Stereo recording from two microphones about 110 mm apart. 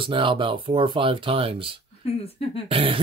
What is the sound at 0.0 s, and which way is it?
Speech, 50° right (ahead or behind).